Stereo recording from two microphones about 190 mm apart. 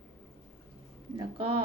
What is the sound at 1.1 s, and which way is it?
Speech, 25° right (ahead or behind).